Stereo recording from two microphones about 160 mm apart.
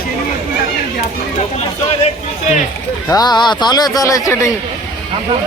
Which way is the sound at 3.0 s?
25° left (ahead or behind).